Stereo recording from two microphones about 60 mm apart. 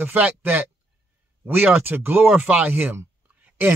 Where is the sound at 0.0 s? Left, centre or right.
Right.